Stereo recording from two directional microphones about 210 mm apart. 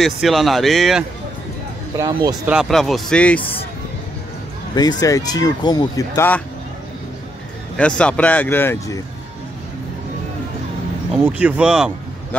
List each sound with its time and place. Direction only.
0.0 s speech: centre (ahead or behind)
2.0 s speech: 15° right (ahead or behind)
2.5 s speech: centre (ahead or behind)
4.7 s speech: 15° left (ahead or behind)
7.7 s speech: 5° left (ahead or behind)
11.1 s a man's voice: 5° right (ahead or behind)